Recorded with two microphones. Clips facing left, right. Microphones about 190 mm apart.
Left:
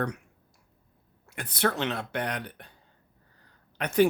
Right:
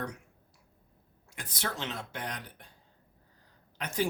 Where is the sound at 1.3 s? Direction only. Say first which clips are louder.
Left 10 dB; 60° left (ahead or behind).